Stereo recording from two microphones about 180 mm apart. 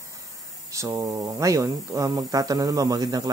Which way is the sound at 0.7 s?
15° right (ahead or behind).